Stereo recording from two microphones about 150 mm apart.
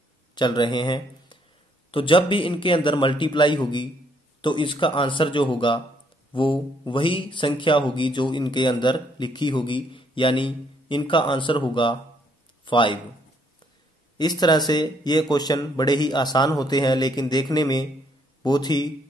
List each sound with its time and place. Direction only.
0.3 s speech: 30° left (ahead or behind)
14.1 s speech: 30° left (ahead or behind)